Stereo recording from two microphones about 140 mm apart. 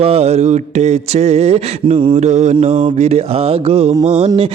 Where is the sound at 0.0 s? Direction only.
45° right (ahead or behind).